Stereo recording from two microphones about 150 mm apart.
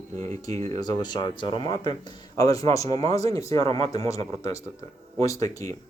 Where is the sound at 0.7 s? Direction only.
25° left (ahead or behind).